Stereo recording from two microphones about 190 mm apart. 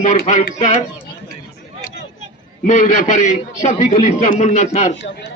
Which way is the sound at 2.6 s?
40° left (ahead or behind).